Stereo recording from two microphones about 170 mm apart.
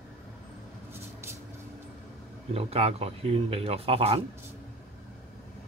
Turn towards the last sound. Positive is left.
turn(degrees=-35)  # may be behind; listen again after turning